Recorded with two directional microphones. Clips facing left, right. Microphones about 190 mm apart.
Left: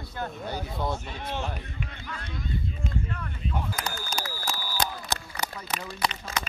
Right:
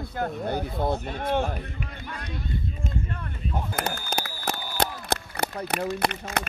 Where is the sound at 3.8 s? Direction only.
55° right (ahead or behind).